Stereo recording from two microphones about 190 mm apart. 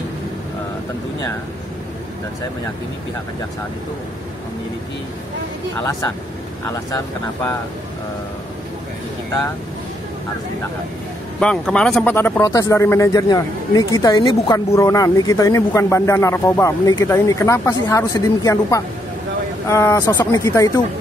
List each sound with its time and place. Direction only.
5.8 s speech: 15° left (ahead or behind)
11.3 s speech: 5° left (ahead or behind)